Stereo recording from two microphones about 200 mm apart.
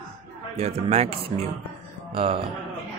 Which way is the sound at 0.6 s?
30° right (ahead or behind).